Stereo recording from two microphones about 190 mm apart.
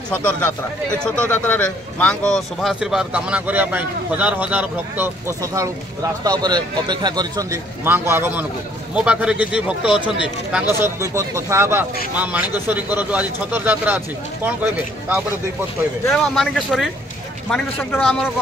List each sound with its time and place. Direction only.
0.1 s a man's voice: 10° left (ahead or behind); by 15.2 s 10° right (ahead or behind)
16.1 s a man's voice: centre (ahead or behind)